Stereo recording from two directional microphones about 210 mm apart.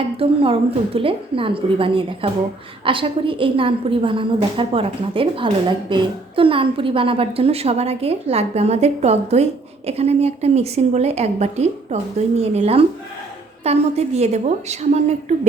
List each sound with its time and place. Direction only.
0.2 s a woman's voice: 25° right (ahead or behind)